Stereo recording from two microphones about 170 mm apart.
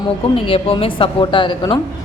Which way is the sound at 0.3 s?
30° left (ahead or behind).